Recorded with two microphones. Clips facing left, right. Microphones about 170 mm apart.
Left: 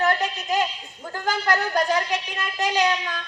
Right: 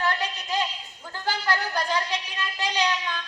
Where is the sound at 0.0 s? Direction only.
45° left (ahead or behind).